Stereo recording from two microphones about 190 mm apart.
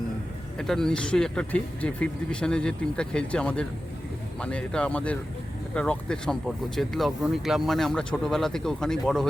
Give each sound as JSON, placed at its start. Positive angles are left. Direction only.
{"t": 0.6, "sound": "speech", "side_deg": 0}